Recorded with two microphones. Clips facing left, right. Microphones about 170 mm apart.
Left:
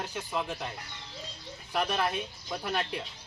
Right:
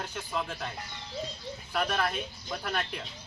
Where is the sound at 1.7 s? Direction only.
15° left (ahead or behind).